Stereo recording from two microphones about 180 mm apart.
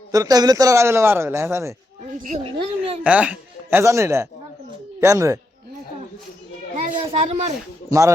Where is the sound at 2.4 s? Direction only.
30° right (ahead or behind).